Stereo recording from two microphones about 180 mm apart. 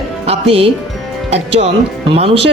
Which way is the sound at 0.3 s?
35° right (ahead or behind).